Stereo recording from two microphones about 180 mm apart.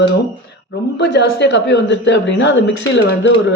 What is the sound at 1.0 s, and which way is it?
Speech, 70° left (ahead or behind).